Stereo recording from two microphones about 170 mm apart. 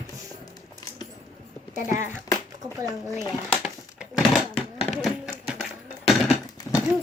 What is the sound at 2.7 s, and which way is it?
Speech, 20° right (ahead or behind).